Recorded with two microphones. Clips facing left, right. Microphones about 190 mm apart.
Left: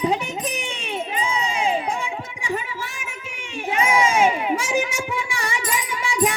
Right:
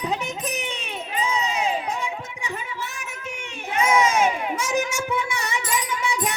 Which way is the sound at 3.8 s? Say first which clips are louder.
Even; 10° left (ahead or behind).